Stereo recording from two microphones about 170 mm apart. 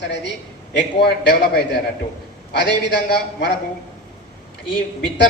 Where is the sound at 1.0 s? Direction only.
70° left (ahead or behind).